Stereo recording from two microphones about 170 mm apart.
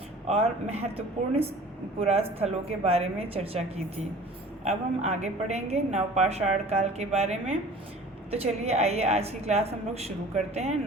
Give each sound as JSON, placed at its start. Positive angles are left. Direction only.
{"t": 0.3, "sound": "a woman's voice", "side_deg": -40}
{"t": 4.6, "sound": "a woman's voice", "side_deg": -40}